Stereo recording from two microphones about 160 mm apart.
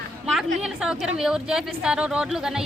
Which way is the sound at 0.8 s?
5° right (ahead or behind).